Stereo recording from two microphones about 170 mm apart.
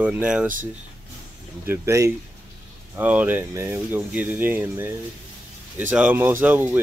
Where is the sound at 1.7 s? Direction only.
15° right (ahead or behind).